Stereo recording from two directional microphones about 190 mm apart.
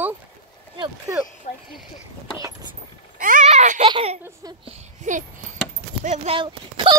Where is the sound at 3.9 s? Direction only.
30° right (ahead or behind).